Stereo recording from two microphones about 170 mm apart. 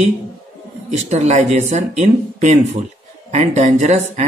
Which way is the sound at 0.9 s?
45° right (ahead or behind).